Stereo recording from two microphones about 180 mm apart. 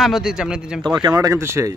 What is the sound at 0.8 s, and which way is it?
Speech, 25° right (ahead or behind).